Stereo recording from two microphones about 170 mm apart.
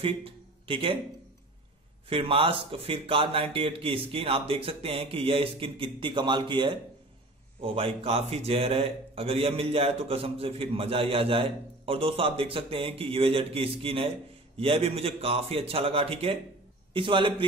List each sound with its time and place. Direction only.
0.0 s speech: 30° right (ahead or behind)
2.0 s a man's voice: 30° right (ahead or behind)